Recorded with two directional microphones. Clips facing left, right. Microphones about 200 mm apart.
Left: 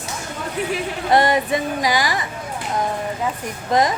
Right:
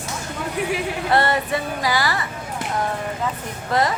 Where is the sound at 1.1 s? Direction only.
15° left (ahead or behind).